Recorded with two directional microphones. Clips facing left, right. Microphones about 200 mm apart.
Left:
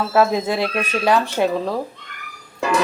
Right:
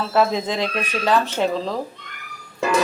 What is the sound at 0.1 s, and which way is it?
Speech, 10° left (ahead or behind).